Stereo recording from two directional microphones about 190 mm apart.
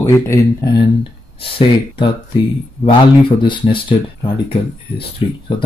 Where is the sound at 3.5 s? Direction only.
25° left (ahead or behind).